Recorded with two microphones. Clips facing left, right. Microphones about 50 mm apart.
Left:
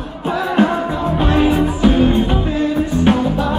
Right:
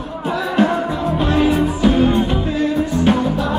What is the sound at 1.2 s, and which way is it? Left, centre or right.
Music, left.